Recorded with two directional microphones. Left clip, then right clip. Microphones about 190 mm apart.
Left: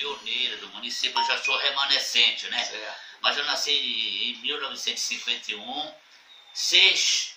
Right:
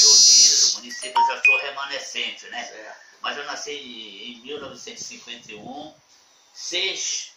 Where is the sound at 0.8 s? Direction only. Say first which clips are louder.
Right 4 dB; 15° left (ahead or behind).